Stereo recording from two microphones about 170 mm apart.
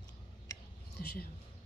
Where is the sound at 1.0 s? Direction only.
65° left (ahead or behind).